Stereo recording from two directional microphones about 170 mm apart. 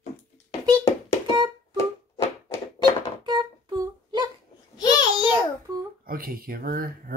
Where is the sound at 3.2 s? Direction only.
25° right (ahead or behind).